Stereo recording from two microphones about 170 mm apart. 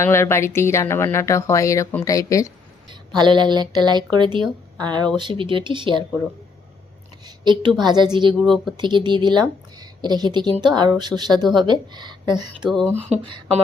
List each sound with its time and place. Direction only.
0.0 s speech: 15° left (ahead or behind)
2.9 s speech: 25° right (ahead or behind)
7.3 s a woman's voice: 25° right (ahead or behind)